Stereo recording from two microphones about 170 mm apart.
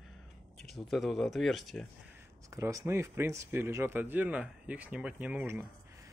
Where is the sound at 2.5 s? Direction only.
20° right (ahead or behind).